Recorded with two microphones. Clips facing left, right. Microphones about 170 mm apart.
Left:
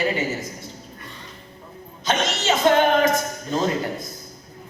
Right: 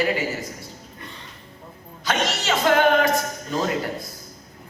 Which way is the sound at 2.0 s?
25° left (ahead or behind).